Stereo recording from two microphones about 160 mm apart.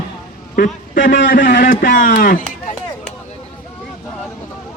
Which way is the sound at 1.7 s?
55° left (ahead or behind).